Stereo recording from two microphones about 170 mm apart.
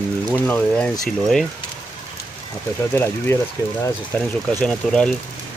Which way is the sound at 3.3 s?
15° left (ahead or behind).